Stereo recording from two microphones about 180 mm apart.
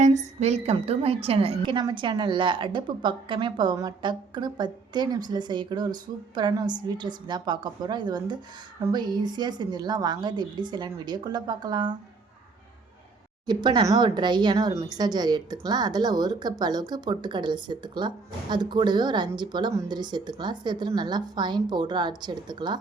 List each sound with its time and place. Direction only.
0.0 s a woman's voice: 40° right (ahead or behind); by 11.9 s 25° right (ahead or behind)
13.5 s a woman's voice: 25° right (ahead or behind)